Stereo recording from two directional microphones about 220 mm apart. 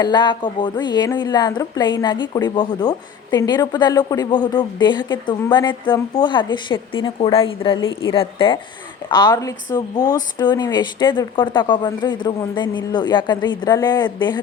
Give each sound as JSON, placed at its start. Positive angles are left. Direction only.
{"t": 0.0, "sound": "speech", "side_deg": 20}